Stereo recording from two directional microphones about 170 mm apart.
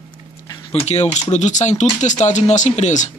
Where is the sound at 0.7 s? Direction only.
40° left (ahead or behind).